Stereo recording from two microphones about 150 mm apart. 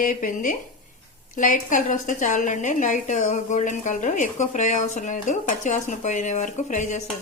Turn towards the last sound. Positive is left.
turn(degrees=55)  # may be behind; listen again after turning